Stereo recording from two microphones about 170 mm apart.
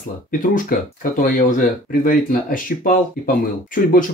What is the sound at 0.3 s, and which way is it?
Speech, 55° left (ahead or behind).